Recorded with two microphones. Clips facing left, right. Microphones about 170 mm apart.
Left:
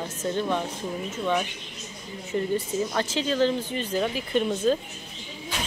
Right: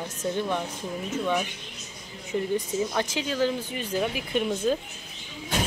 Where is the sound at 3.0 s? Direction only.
15° right (ahead or behind).